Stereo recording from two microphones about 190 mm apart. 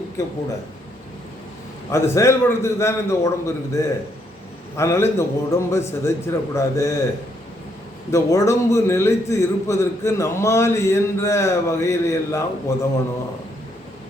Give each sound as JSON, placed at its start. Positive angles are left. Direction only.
{"t": 0.2, "sound": "a man's voice", "side_deg": 15}
{"t": 1.9, "sound": "a man's voice", "side_deg": 15}
{"t": 8.1, "sound": "a man's voice", "side_deg": 15}